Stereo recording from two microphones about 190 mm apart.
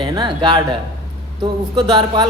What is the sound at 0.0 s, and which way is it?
A man's voice, 25° right (ahead or behind).